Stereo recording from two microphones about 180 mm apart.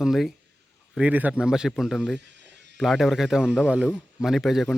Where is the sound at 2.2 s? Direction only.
75° right (ahead or behind).